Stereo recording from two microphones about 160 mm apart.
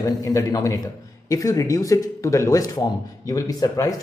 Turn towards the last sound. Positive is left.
turn(degrees=20)  # may be behind; listen again after turning